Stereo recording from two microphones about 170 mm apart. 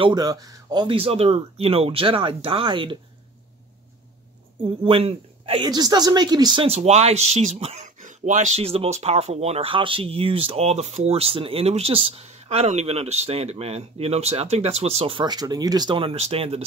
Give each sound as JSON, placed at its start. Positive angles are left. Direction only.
{"t": 0.0, "sound": "speech", "side_deg": -25}
{"t": 4.8, "sound": "speech", "side_deg": -30}